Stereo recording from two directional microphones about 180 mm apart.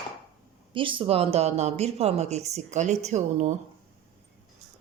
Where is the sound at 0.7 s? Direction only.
30° right (ahead or behind).